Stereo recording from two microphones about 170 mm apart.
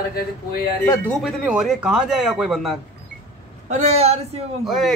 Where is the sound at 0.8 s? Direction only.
20° left (ahead or behind).